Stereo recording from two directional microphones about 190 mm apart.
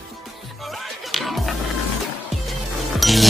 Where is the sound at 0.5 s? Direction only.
Centre (ahead or behind).